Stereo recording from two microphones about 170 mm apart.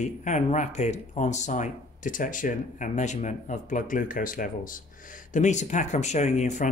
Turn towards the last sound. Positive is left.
turn(degrees=45)  # may be behind; listen again after turning